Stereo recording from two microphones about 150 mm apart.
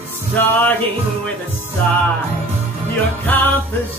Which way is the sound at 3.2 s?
10° left (ahead or behind).